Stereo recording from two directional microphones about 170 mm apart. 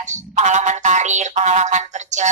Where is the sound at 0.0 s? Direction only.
45° right (ahead or behind).